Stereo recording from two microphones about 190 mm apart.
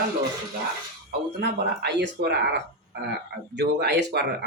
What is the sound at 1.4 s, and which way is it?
Speech, 60° right (ahead or behind).